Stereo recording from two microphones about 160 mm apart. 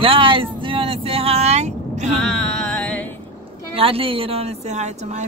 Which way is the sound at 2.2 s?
5° left (ahead or behind).